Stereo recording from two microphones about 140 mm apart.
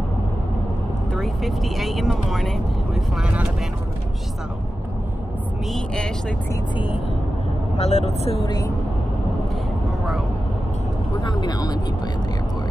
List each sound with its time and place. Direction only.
1.1 s speech: centre (ahead or behind)
5.7 s speech: 5° left (ahead or behind)
7.7 s speech: 50° left (ahead or behind)
11.1 s speech: 30° left (ahead or behind)